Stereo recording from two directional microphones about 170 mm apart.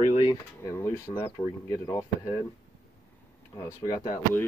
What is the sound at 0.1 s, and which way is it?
Pigeon, 20° left (ahead or behind).